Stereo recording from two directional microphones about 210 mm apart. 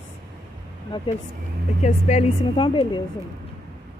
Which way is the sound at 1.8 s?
35° left (ahead or behind).